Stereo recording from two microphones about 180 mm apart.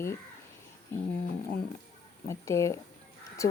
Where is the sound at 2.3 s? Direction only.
15° left (ahead or behind).